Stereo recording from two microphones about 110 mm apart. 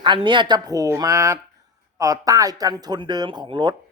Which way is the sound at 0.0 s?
45° right (ahead or behind).